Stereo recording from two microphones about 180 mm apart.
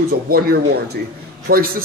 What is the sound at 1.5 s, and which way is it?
Speech, 55° right (ahead or behind).